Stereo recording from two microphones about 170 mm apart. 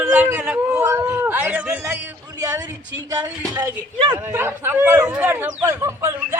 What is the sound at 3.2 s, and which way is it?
A woman's voice, 10° right (ahead or behind).